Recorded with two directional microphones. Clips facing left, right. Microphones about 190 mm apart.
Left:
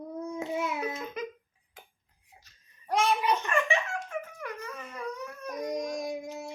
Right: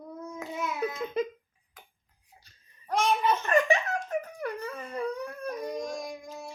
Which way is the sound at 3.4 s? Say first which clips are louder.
Right 4 dB; 40° right (ahead or behind).